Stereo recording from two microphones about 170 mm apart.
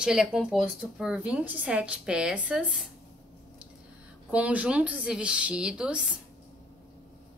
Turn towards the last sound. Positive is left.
turn(degrees=-5)  # may be behind; listen again after turning